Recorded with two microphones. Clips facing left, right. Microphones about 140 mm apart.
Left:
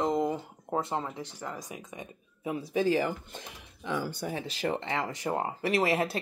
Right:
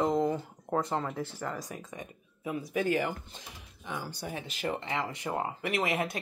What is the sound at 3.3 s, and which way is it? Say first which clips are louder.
Speech: left 4 dB; 85° left.